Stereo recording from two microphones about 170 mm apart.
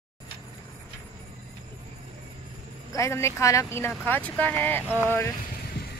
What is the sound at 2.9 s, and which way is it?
Speech, 15° left (ahead or behind).